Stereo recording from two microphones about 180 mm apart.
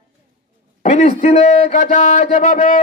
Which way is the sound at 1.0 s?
40° left (ahead or behind).